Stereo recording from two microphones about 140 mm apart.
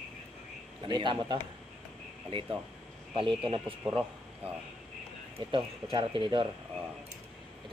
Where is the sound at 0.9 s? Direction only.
35° right (ahead or behind).